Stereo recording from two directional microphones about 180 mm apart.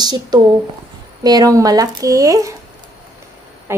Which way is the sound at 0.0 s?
25° right (ahead or behind).